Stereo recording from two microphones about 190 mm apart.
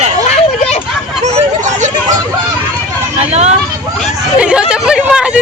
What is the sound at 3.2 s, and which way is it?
Speech, 35° right (ahead or behind).